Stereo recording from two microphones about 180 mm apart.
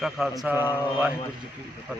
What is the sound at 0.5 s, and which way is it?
Speech, 20° left (ahead or behind).